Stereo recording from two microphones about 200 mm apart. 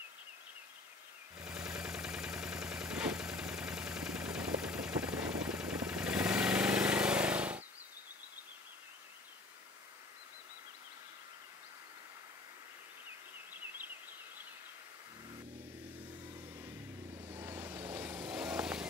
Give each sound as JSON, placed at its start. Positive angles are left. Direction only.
{"t": 1.4, "sound": "vehicle", "side_deg": -5}
{"t": 17.1, "sound": "vehicle", "side_deg": -30}
{"t": 17.4, "sound": "vehicle", "side_deg": -10}